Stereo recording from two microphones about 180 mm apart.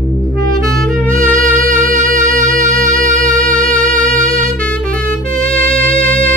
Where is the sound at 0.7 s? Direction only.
5° left (ahead or behind).